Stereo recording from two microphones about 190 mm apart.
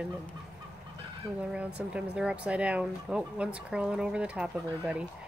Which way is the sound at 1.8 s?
5° right (ahead or behind).